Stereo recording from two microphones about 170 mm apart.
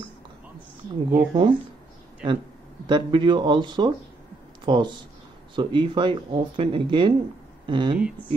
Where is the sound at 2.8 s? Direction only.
30° right (ahead or behind).